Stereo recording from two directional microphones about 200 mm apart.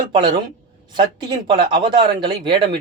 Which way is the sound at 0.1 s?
20° right (ahead or behind).